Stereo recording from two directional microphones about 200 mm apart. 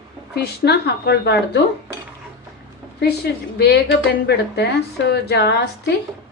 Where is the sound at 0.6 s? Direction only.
55° left (ahead or behind).